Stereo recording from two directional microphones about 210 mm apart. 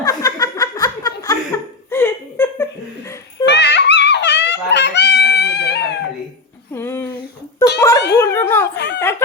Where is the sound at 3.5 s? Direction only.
55° left (ahead or behind).